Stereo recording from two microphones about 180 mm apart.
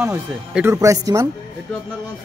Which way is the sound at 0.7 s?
15° right (ahead or behind).